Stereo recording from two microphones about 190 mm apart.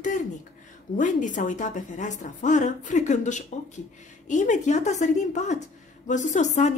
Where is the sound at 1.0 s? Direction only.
40° left (ahead or behind).